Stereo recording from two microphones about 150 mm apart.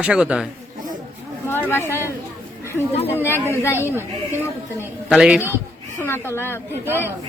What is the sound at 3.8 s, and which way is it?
Speech, 15° right (ahead or behind).